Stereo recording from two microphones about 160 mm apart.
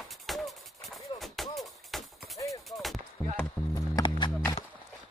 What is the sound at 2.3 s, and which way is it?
Artillery fire, 20° left (ahead or behind).